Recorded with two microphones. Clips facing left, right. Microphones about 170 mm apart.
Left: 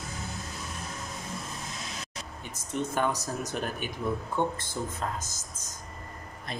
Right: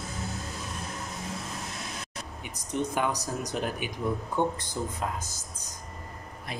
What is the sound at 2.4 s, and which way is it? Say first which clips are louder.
Speech: right 2 dB; 15° right (ahead or behind).